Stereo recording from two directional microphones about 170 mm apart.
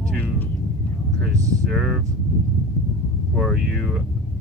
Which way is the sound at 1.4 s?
20° right (ahead or behind).